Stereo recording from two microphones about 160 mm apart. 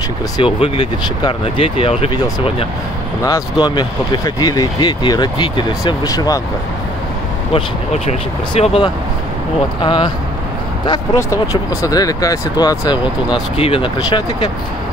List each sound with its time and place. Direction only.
0.4 s speech: 30° left (ahead or behind)
3.3 s speech: 25° left (ahead or behind)
7.5 s speech: 40° left (ahead or behind)
10.9 s speech: 20° left (ahead or behind)